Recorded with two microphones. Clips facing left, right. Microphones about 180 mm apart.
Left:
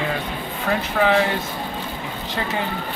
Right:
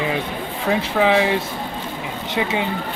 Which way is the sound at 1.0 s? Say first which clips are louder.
Right 1 dB; 15° right (ahead or behind).